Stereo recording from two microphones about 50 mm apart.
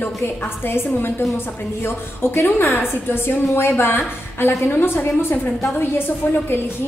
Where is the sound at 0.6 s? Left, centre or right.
Left.